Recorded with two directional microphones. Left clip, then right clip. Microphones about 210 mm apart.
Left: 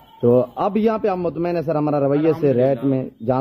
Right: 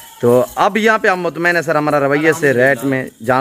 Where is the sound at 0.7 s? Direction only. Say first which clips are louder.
Right 6 dB; 5° left (ahead or behind).